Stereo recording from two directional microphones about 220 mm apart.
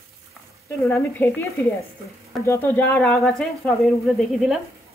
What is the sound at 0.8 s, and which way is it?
Speech, 10° left (ahead or behind).